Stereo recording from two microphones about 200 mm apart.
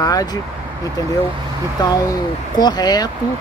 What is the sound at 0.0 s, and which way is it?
Speech, 20° left (ahead or behind).